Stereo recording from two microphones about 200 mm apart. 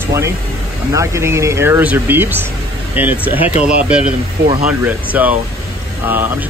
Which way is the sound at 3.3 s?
30° left (ahead or behind).